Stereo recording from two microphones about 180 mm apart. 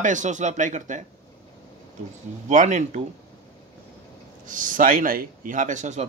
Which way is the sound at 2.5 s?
40° right (ahead or behind).